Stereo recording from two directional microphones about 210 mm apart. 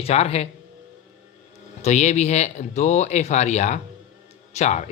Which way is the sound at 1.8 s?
35° left (ahead or behind).